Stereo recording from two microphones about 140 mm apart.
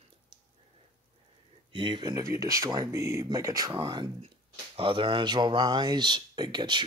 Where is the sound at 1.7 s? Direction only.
35° right (ahead or behind).